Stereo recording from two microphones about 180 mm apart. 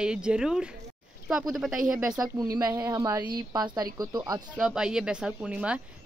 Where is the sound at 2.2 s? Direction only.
20° right (ahead or behind).